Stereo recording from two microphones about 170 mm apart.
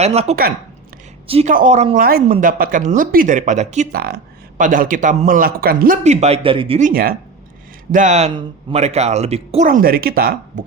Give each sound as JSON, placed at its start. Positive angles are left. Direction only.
{"t": 0.0, "sound": "speech", "side_deg": -40}
{"t": 2.0, "sound": "speech", "side_deg": -60}
{"t": 2.2, "sound": "speech", "side_deg": -45}
{"t": 3.9, "sound": "speech", "side_deg": -65}
{"t": 6.0, "sound": "speech", "side_deg": -40}
{"t": 6.7, "sound": "speech", "side_deg": -55}
{"t": 7.9, "sound": "speech", "side_deg": -45}
{"t": 9.6, "sound": "speech", "side_deg": -55}